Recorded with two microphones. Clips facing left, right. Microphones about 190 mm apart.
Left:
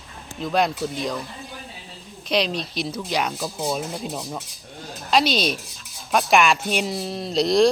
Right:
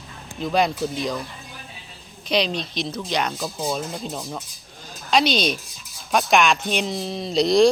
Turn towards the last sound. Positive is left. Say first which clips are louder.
# right 1 dB
turn(degrees=0)  # may be behind; listen again after turning